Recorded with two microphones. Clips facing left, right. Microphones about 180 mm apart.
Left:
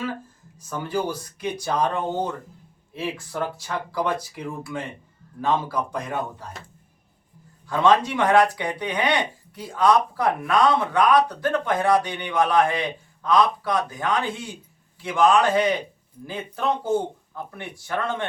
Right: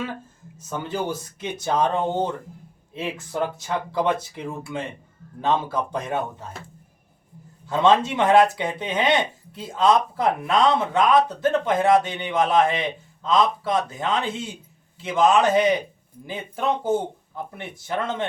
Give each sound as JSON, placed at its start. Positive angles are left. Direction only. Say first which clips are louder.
{"t": 0.5, "sound": "speech", "louder": "left 2 dB", "side_deg": -25}
{"t": 7.7, "sound": "speech", "louder": "right 1 dB", "side_deg": -25}